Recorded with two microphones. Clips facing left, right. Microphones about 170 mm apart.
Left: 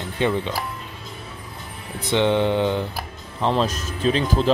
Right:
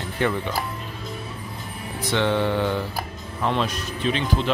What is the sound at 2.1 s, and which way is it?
Mantra, 20° left (ahead or behind).